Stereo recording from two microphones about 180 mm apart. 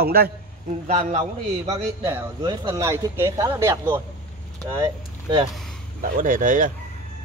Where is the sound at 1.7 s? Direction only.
20° right (ahead or behind).